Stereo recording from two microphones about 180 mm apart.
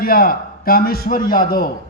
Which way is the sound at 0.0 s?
55° left (ahead or behind).